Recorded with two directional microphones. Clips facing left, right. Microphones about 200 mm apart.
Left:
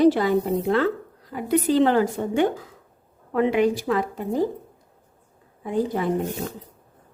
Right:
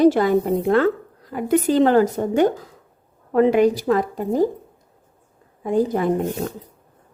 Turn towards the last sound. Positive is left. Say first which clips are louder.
# right 4 dB
turn(degrees=-45)  # may be behind; listen again after turning